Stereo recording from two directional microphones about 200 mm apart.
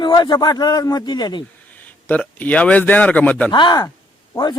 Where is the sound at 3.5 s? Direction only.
20° left (ahead or behind).